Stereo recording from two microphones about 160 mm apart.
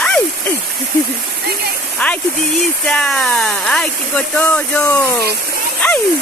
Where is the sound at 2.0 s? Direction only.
5° left (ahead or behind).